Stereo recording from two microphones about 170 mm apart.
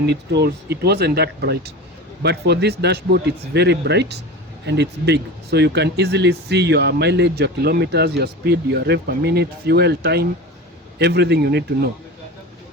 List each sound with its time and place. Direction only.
0.0 s speech: 85° right